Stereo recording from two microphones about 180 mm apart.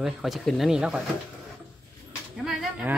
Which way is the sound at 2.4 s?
5° right (ahead or behind).